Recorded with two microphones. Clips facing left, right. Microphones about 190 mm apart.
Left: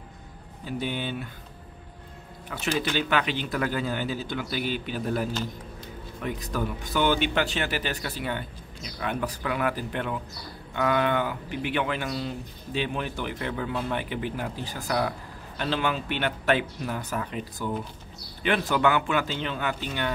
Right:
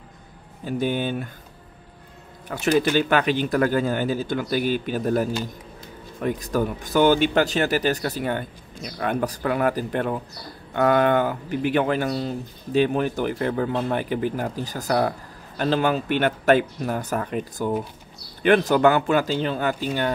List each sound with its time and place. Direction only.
0.7 s speech: 45° right (ahead or behind)
2.6 s speech: 50° right (ahead or behind)